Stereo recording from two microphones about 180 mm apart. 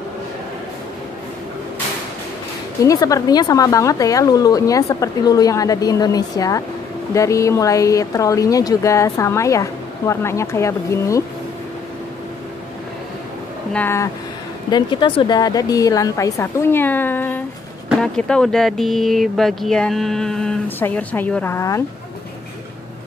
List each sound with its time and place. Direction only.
2.8 s a woman's voice: 20° left (ahead or behind)
13.7 s a woman's voice: 15° left (ahead or behind)
14.7 s speech: 25° left (ahead or behind)